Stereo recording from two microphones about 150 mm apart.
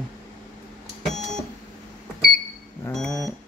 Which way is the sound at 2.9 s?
5° left (ahead or behind).